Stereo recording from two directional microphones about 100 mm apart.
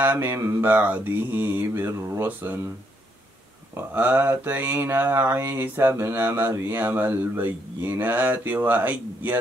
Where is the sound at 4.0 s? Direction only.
20° right (ahead or behind).